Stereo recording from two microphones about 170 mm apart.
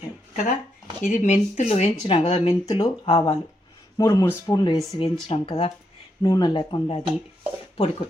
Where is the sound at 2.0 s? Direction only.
30° left (ahead or behind).